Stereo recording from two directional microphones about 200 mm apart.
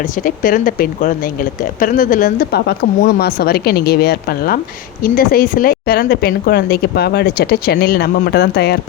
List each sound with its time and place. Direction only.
0.2 s speech: 45° left (ahead or behind)